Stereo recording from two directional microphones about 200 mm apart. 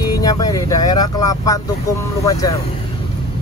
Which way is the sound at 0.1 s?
20° left (ahead or behind).